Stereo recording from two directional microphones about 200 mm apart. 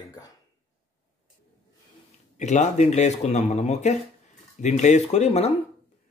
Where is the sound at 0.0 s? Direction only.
20° left (ahead or behind).